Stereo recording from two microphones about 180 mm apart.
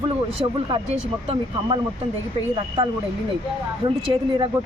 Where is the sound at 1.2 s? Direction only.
30° right (ahead or behind).